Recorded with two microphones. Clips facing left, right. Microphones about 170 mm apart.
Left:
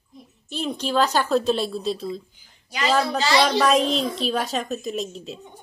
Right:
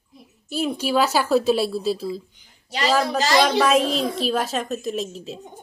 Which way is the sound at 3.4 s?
5° right (ahead or behind).